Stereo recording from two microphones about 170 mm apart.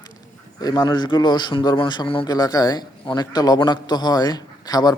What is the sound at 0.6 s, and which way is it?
A man's voice, 25° left (ahead or behind).